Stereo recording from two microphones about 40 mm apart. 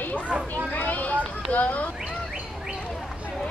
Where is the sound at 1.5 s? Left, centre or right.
Left.